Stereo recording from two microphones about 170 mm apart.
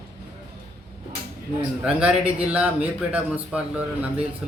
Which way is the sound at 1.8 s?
5° right (ahead or behind).